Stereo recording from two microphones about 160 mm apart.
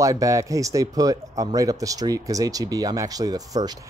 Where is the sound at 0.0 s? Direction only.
20° right (ahead or behind).